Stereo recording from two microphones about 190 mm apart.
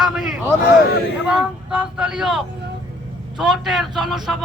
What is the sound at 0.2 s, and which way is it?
Speech, 5° right (ahead or behind).